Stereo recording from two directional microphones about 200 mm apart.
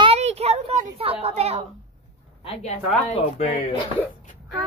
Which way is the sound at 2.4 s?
30° left (ahead or behind).